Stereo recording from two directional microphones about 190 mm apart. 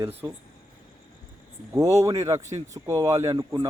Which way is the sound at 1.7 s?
15° right (ahead or behind).